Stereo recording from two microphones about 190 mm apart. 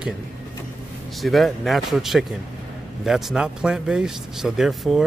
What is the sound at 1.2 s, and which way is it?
Speech, centre (ahead or behind).